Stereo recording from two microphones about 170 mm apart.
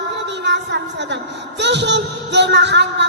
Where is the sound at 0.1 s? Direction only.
90° right.